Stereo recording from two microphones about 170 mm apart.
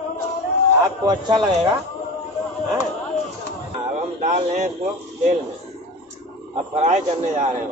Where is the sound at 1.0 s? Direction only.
25° right (ahead or behind).